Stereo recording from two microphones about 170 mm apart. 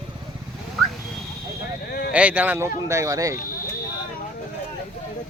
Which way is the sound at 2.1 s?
10° right (ahead or behind).